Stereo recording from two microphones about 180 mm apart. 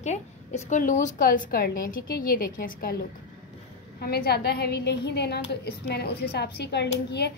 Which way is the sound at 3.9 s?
60° left (ahead or behind).